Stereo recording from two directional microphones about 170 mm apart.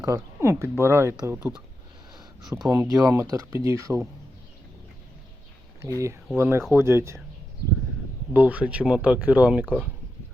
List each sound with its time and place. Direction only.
0.0 s speech: 15° right (ahead or behind)
2.6 s speech: 20° right (ahead or behind)
6.3 s speech: 15° right (ahead or behind)
8.3 s speech: 10° right (ahead or behind)